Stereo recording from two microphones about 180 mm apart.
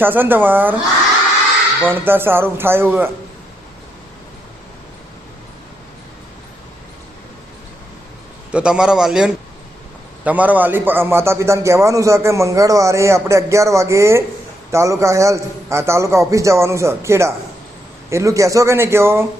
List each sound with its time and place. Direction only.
0.0 s a man's voice: 10° right (ahead or behind)
1.8 s a man's voice: 10° right (ahead or behind)
8.5 s a man's voice: 5° right (ahead or behind)